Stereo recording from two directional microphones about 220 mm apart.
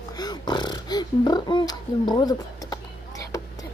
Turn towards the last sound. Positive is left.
turn(degrees=15)  # may be behind; listen again after turning